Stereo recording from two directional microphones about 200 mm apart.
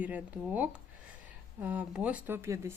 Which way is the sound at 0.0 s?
10° right (ahead or behind).